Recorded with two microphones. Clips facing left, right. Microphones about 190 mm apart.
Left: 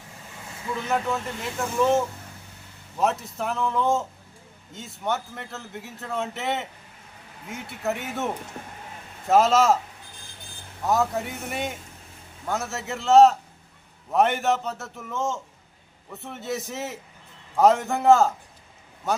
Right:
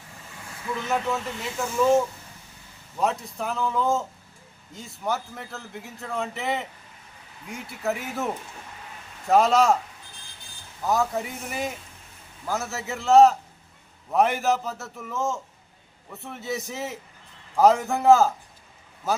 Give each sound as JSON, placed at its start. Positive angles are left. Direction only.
{"t": 0.9, "sound": "a man's voice", "side_deg": 0}
{"t": 8.6, "sound": "speech", "side_deg": 55}
{"t": 9.2, "sound": "a man's voice", "side_deg": 0}
{"t": 10.8, "sound": "a man's voice", "side_deg": 0}